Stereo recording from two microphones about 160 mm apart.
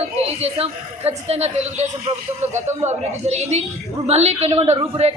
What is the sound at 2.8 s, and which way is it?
A woman's voice, 45° right (ahead or behind).